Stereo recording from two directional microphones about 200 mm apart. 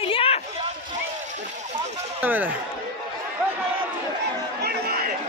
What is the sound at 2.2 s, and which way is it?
Speech, 10° right (ahead or behind).